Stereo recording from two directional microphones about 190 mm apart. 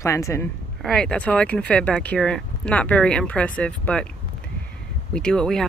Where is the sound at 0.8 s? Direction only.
5° left (ahead or behind).